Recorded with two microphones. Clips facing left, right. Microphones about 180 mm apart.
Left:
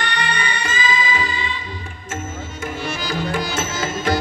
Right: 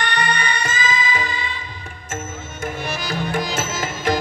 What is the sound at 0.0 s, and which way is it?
Music, 50° right (ahead or behind).